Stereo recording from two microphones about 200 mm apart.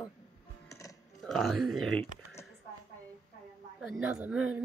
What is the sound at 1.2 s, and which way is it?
Speech, centre (ahead or behind).